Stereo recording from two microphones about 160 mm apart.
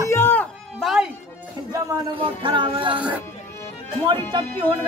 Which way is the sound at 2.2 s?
30° right (ahead or behind).